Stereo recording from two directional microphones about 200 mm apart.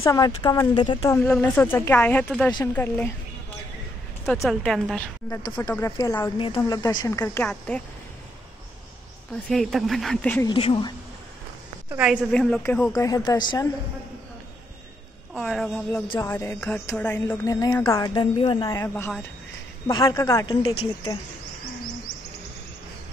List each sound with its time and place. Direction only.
0.0 s speech: 20° left (ahead or behind)
1.1 s speech: 10° left (ahead or behind)
4.3 s speech: centre (ahead or behind)
5.3 s speech: 15° left (ahead or behind)
9.5 s speech: centre (ahead or behind)
10.5 s speech: 25° left (ahead or behind)
11.9 s speech: 5° right (ahead or behind); by 13.7 s 20° left (ahead or behind)
15.3 s speech: centre (ahead or behind)
16.1 s speech: 15° left (ahead or behind)
20.7 s speech: 25° left (ahead or behind)